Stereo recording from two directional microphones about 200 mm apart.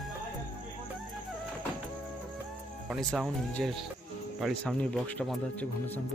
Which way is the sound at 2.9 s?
Centre (ahead or behind).